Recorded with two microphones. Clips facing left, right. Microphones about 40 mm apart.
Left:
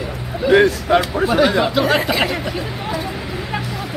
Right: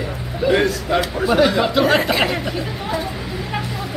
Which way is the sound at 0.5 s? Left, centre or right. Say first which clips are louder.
Left 5 dB; centre.